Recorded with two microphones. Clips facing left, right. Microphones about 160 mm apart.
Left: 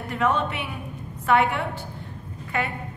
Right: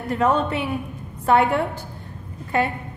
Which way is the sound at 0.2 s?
35° right (ahead or behind).